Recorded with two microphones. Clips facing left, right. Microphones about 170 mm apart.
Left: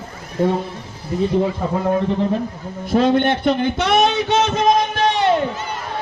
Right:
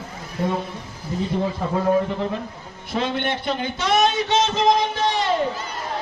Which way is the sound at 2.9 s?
50° left (ahead or behind).